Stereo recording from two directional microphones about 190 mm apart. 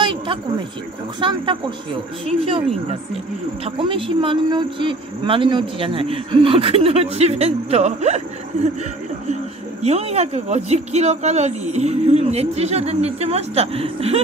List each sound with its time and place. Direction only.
0.0 s a sound: 25° right (ahead or behind)
1.2 s speech: 25° right (ahead or behind)
9.3 s speech: 35° right (ahead or behind)